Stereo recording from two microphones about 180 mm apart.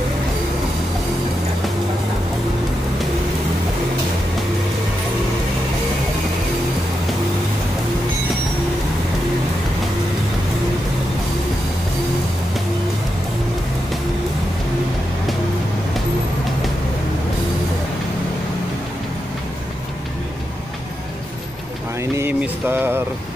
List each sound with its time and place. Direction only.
22.1 s mantra: 10° right (ahead or behind)